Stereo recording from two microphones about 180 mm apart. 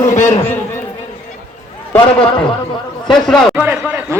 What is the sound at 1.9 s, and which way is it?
A man's voice, 5° left (ahead or behind).